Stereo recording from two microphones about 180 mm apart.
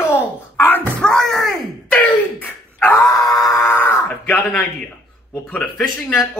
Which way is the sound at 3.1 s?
20° left (ahead or behind).